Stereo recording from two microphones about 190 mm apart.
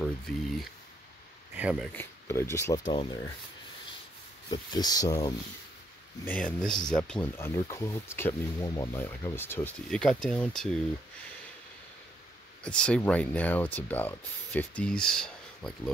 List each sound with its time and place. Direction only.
0.0 s speech: centre (ahead or behind)
1.9 s speech: 10° left (ahead or behind)
4.5 s speech: 20° left (ahead or behind)
6.2 s speech: 5° left (ahead or behind)
12.6 s speech: 5° left (ahead or behind)